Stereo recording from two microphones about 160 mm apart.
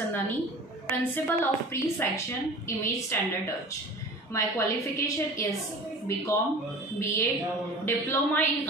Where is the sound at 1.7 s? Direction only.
15° left (ahead or behind).